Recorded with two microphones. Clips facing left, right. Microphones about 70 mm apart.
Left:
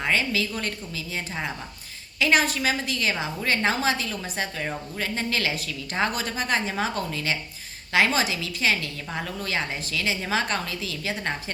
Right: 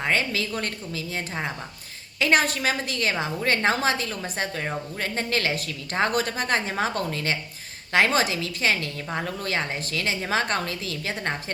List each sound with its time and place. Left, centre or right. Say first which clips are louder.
0.0 s a woman's voice: even; right